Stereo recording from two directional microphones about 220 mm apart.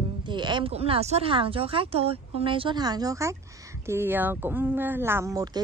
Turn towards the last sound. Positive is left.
turn(degrees=-15)  # may be behind; listen again after turning